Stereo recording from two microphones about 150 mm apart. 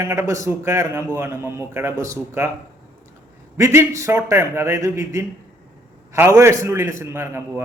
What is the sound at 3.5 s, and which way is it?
A man's voice, 20° right (ahead or behind).